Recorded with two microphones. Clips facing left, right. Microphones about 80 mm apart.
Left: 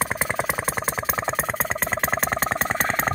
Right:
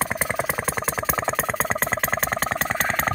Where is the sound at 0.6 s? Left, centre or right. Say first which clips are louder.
Right 1 dB; centre.